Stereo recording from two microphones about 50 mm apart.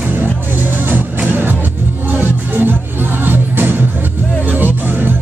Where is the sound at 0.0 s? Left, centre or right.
Right.